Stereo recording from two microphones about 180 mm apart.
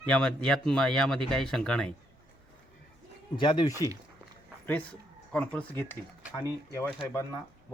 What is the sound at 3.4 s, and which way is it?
Speech, 25° left (ahead or behind).